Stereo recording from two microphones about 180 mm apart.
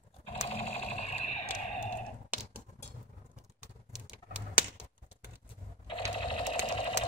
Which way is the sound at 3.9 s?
5° right (ahead or behind).